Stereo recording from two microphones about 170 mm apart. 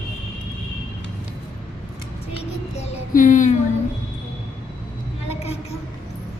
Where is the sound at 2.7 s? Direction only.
45° left (ahead or behind).